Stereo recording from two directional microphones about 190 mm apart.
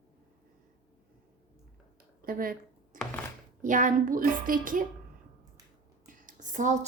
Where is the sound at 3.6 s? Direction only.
45° right (ahead or behind).